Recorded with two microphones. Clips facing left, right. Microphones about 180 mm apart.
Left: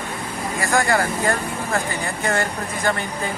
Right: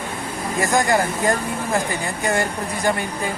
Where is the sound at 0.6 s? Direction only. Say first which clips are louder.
Right 1 dB; 20° right (ahead or behind).